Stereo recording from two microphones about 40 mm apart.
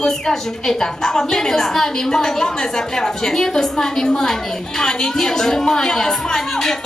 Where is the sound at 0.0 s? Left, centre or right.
Centre.